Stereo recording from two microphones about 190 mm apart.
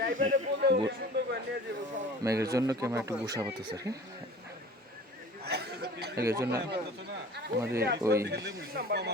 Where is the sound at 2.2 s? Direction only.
15° right (ahead or behind).